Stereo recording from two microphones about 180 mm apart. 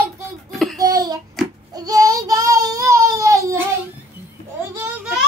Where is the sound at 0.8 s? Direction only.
20° right (ahead or behind).